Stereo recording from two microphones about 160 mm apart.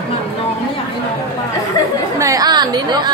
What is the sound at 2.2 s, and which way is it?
Chatter, 20° right (ahead or behind).